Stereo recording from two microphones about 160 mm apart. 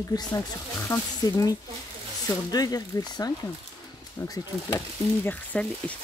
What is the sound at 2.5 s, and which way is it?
Speech, 25° left (ahead or behind).